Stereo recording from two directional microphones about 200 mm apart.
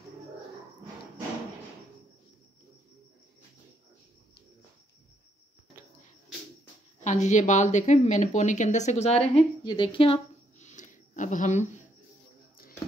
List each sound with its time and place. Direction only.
7.0 s speech: 35° left (ahead or behind)